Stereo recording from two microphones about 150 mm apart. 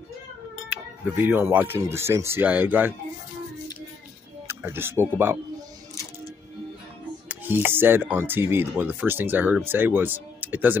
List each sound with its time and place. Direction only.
1.1 s speech: 10° right (ahead or behind)
4.5 s speech: 15° right (ahead or behind)
7.2 s speech: 15° right (ahead or behind)